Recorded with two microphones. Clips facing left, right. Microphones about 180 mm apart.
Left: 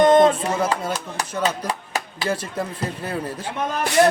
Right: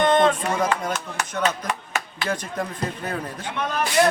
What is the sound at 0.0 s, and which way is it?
Music, 40° left (ahead or behind).